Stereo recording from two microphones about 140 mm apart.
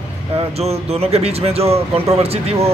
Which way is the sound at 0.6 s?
50° right (ahead or behind).